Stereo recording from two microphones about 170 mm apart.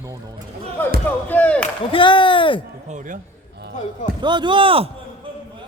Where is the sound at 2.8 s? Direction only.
45° right (ahead or behind).